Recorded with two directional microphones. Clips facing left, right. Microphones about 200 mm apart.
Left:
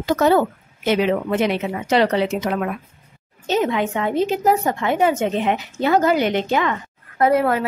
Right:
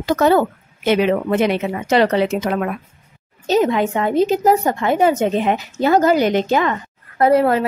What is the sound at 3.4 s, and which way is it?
A woman's voice, 35° right (ahead or behind).